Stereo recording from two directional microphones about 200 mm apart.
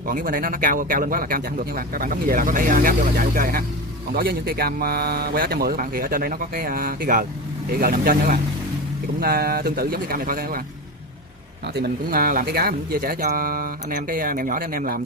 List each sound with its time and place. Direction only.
0.1 s a man's voice: 45° right (ahead or behind)
11.7 s a man's voice: 50° right (ahead or behind)